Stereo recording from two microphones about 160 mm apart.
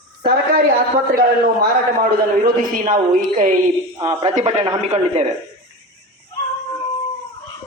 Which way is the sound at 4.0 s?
35° right (ahead or behind).